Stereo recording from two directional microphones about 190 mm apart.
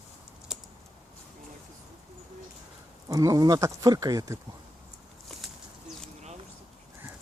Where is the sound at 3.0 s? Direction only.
15° right (ahead or behind).